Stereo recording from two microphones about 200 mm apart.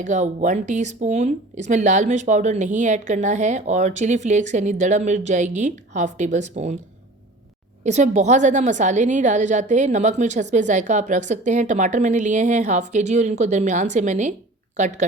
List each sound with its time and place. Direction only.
0.0 s speech: 40° right (ahead or behind)
7.9 s speech: 35° right (ahead or behind)